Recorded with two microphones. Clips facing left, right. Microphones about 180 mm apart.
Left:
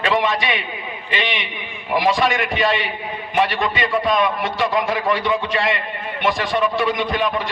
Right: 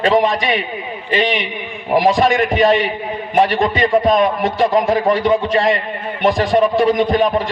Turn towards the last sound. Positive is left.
turn(degrees=-40)  # may be behind; listen again after turning